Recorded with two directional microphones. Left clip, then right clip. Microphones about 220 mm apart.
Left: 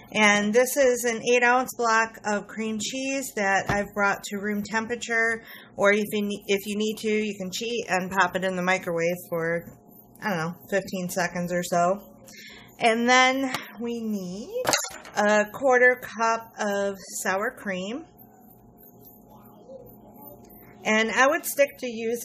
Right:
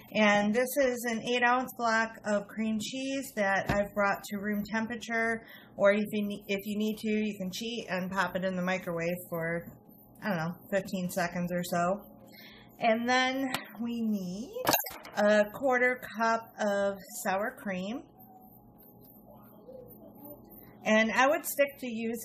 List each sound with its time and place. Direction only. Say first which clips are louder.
0.1 s a woman's voice: left 6 dB; 45° left (ahead or behind)
12.4 s music: left 7 dB; 45° left (ahead or behind)
14.6 s single-lens reflex camera: left 4 dB; 5° left (ahead or behind)
15.1 s a woman's voice: left 3 dB; 35° left (ahead or behind)
20.8 s a woman's voice: left 4 dB; 35° left (ahead or behind)